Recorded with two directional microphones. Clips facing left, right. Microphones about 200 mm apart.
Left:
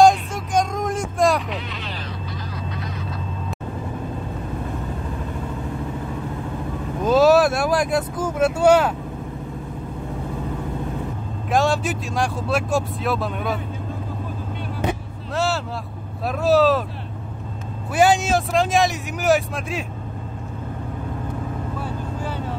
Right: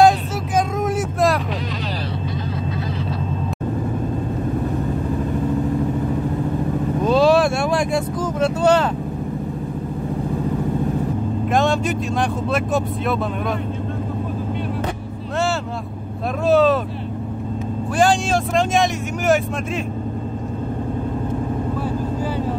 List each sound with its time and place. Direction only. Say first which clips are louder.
0.6 s vehicle: right 2 dB; 5° right (ahead or behind)
7.0 s vehicle: left 1 dB; 5° left (ahead or behind)
11.5 s speech: even; centre (ahead or behind)
14.9 s vehicle: even; centre (ahead or behind)
16.4 s speech: right 1 dB; centre (ahead or behind)
17.9 s speech: left 1 dB; 5° left (ahead or behind)